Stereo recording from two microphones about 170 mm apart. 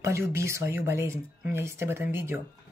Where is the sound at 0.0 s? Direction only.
15° right (ahead or behind).